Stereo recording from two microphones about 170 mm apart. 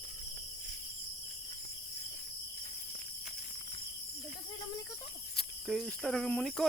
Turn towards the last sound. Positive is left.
turn(degrees=5)  # may be behind; listen again after turning